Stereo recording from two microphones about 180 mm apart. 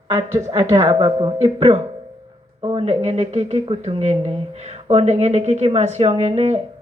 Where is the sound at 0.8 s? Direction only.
30° right (ahead or behind).